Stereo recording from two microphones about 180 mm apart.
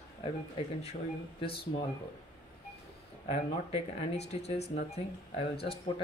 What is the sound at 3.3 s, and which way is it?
Speech, 35° left (ahead or behind).